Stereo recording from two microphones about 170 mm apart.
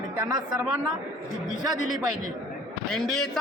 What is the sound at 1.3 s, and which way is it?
Speech, centre (ahead or behind).